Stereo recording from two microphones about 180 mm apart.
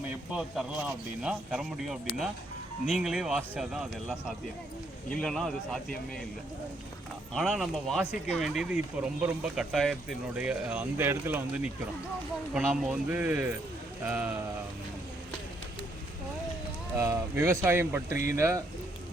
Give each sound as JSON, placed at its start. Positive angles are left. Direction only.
{"t": 0.3, "sound": "speech", "side_deg": -5}
{"t": 5.0, "sound": "speech", "side_deg": 5}
{"t": 7.3, "sound": "speech", "side_deg": 0}
{"t": 17.0, "sound": "speech", "side_deg": -15}
{"t": 18.1, "sound": "speech", "side_deg": 45}
{"t": 18.3, "sound": "speech", "side_deg": -15}